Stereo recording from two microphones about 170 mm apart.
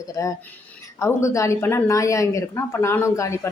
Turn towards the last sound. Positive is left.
turn(degrees=15)  # may be behind; listen again after turning